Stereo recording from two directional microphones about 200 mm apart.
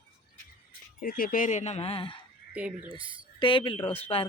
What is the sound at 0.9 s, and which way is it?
Speech, 45° left (ahead or behind).